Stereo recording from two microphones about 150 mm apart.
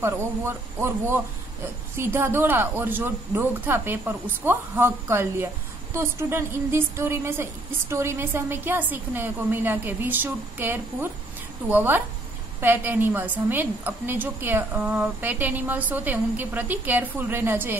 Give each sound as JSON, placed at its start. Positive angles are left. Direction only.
{"t": 0.0, "sound": "a woman's voice", "side_deg": -15}